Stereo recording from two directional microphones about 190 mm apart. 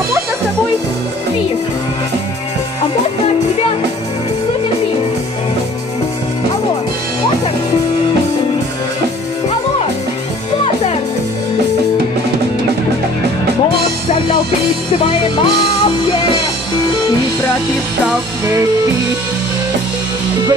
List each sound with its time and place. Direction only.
15.0 s music: 25° left (ahead or behind)